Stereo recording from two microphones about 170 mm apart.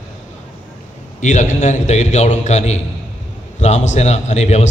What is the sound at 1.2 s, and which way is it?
A man's voice, 45° left (ahead or behind).